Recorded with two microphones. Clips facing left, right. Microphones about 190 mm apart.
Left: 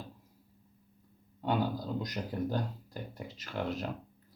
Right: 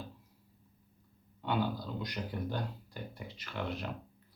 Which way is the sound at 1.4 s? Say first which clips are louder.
Left 2 dB; 40° left (ahead or behind).